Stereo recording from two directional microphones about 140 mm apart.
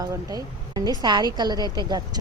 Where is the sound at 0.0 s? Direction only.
25° right (ahead or behind).